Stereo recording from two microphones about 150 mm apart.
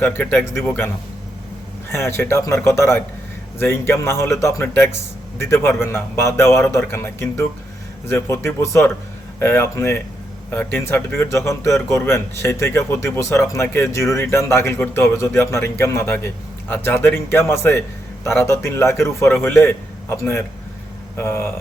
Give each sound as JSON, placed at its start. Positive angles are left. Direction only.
{"t": 0.0, "sound": "a man's voice", "side_deg": 10}
{"t": 1.9, "sound": "a man's voice", "side_deg": 15}